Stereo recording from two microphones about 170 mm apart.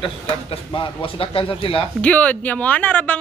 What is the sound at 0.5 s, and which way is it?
Speech, 30° left (ahead or behind).